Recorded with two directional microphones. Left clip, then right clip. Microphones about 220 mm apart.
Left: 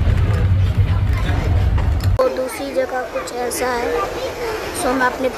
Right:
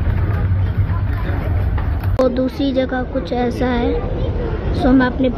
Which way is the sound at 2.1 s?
5° right (ahead or behind).